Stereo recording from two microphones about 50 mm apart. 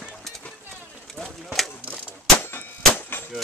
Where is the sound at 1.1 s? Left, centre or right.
Centre.